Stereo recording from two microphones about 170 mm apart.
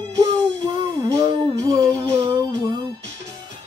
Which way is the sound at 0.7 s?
20° right (ahead or behind).